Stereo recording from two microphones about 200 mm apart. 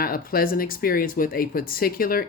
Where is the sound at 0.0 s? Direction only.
45° left (ahead or behind).